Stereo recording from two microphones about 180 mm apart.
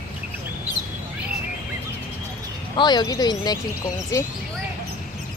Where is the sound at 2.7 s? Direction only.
25° left (ahead or behind).